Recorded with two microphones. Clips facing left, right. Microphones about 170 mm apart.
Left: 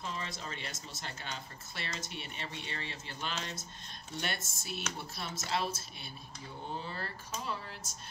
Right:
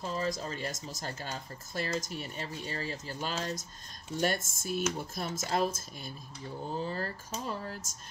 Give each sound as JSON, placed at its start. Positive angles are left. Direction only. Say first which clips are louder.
{"t": 0.0, "sound": "a woman's voice", "louder": "right 7 dB", "side_deg": -40}